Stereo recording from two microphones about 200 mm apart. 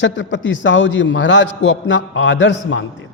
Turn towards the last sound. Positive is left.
turn(degrees=65)  # may be behind; listen again after turning